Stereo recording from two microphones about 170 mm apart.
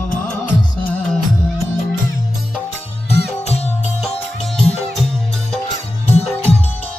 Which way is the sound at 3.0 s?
40° left (ahead or behind).